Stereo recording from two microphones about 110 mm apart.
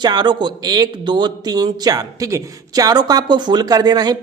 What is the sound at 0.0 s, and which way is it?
A man's voice, 40° right (ahead or behind).